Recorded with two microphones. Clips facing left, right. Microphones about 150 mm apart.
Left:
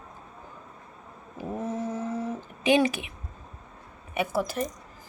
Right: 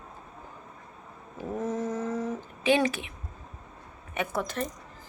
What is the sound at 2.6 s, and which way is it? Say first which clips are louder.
Speech: left 2 dB; 15° left (ahead or behind).